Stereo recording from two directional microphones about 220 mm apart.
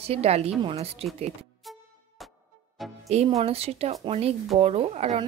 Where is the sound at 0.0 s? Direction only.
30° right (ahead or behind).